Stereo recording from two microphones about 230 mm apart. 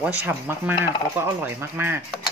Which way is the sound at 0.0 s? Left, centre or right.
Centre.